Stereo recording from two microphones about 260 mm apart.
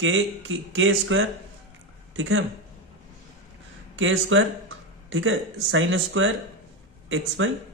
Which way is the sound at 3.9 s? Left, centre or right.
Right.